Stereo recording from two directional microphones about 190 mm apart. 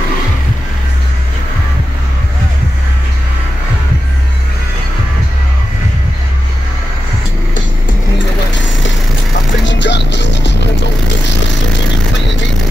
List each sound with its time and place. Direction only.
9.7 s music: 70° left (ahead or behind)